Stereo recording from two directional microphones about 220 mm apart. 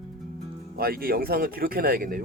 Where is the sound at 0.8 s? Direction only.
45° right (ahead or behind).